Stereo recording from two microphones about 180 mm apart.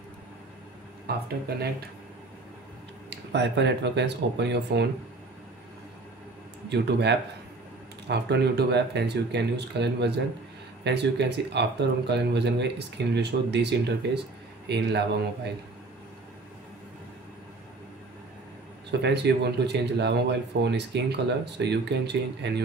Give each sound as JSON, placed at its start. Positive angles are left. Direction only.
{"t": 1.1, "sound": "speech", "side_deg": -60}
{"t": 3.1, "sound": "speech", "side_deg": -75}
{"t": 6.7, "sound": "speech", "side_deg": -70}
{"t": 18.9, "sound": "speech", "side_deg": -70}